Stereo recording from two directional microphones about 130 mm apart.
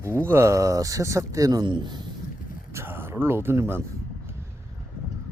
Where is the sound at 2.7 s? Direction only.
20° right (ahead or behind).